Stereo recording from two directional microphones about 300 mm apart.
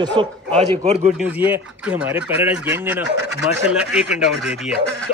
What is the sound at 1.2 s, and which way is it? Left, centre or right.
Speech, centre.